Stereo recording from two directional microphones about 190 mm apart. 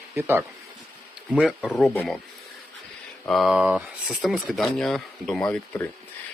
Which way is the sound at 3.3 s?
Centre (ahead or behind).